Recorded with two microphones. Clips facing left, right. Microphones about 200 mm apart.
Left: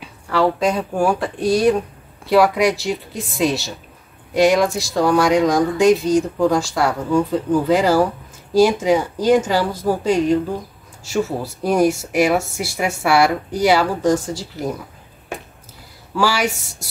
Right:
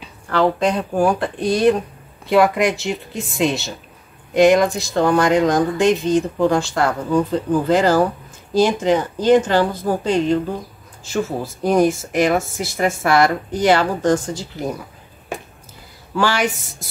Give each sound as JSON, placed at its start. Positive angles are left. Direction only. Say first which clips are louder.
{"t": 0.0, "sound": "speech", "louder": "even", "side_deg": 5}
{"t": 16.2, "sound": "speech", "louder": "even", "side_deg": 5}